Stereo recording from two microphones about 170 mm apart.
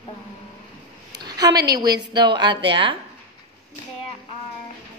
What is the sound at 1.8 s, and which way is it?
A woman's voice, 25° right (ahead or behind).